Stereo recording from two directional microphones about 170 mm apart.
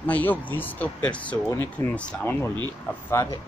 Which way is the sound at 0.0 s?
10° left (ahead or behind).